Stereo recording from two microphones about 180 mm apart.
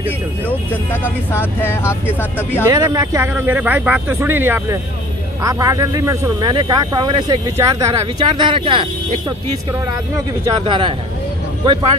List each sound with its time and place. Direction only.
1.0 s speech: 10° left (ahead or behind)
2.7 s speech: 20° right (ahead or behind)
10.4 s speech: 30° right (ahead or behind)